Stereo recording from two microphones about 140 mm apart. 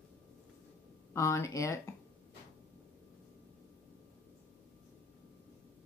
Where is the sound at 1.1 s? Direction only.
20° left (ahead or behind).